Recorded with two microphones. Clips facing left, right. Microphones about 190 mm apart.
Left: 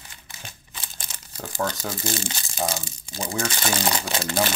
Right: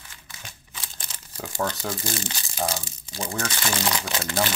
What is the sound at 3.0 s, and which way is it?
Speech, 10° left (ahead or behind).